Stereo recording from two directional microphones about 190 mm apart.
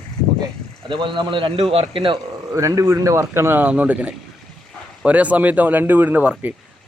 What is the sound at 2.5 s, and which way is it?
Speech, 15° right (ahead or behind).